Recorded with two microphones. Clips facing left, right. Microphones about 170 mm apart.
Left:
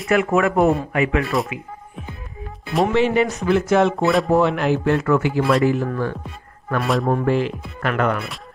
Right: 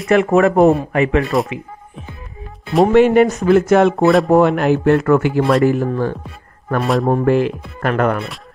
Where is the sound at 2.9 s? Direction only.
50° right (ahead or behind).